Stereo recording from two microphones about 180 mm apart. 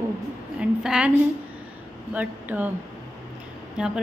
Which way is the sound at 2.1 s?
10° right (ahead or behind).